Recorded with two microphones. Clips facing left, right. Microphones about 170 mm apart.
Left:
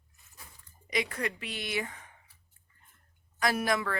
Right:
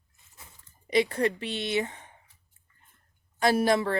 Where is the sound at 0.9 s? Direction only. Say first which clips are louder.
Right 8 dB; 30° right (ahead or behind).